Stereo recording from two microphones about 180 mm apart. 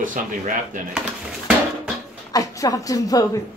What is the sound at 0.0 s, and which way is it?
Speech, 45° right (ahead or behind).